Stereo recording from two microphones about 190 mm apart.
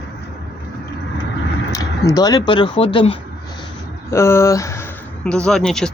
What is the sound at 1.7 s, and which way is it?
Speech, 20° left (ahead or behind).